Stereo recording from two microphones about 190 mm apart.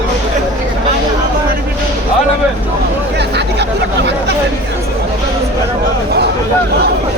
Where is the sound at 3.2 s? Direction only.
65° right (ahead or behind).